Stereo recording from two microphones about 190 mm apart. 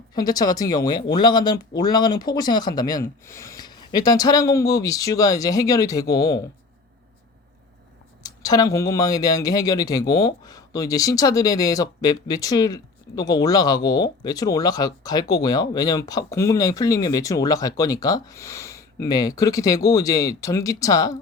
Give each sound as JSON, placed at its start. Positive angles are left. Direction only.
{"t": 0.1, "sound": "speech", "side_deg": 20}
{"t": 8.2, "sound": "speech", "side_deg": 20}